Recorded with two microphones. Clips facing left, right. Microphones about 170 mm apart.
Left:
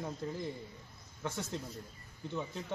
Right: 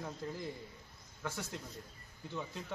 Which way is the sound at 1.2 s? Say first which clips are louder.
Left 3 dB; 20° left (ahead or behind).